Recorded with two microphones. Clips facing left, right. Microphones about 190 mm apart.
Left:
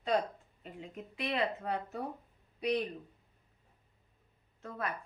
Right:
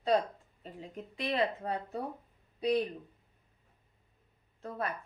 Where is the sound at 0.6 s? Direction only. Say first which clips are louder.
Right 1 dB; 35° right (ahead or behind).